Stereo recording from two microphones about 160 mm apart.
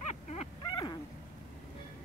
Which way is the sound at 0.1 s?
45° left (ahead or behind).